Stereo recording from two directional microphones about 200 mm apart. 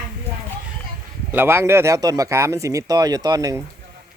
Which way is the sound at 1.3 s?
10° right (ahead or behind).